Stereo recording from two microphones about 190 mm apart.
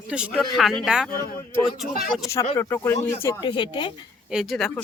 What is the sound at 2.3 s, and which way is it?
Speech, 15° left (ahead or behind).